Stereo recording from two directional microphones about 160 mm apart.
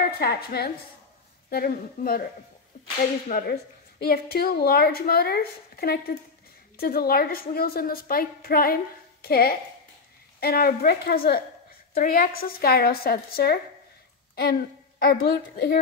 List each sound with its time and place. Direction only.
0.2 s a woman's voice: 75° left (ahead or behind)
3.3 s speech: 60° left (ahead or behind)
4.0 s a woman's voice: 75° left (ahead or behind)